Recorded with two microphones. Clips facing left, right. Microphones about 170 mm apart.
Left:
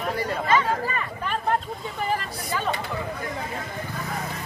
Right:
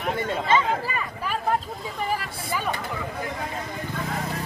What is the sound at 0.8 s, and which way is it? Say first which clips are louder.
Speech: left 1 dB; 10° right (ahead or behind).